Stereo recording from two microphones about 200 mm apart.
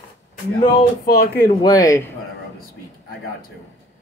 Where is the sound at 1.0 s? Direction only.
50° left (ahead or behind).